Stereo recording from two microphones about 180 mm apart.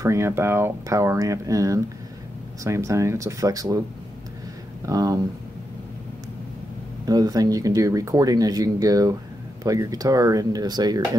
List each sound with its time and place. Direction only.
0.0 s speech: 15° right (ahead or behind)
4.8 s speech: 20° right (ahead or behind)
7.1 s speech: 20° right (ahead or behind)